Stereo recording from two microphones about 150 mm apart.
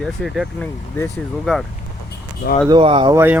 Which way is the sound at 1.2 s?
Centre (ahead or behind).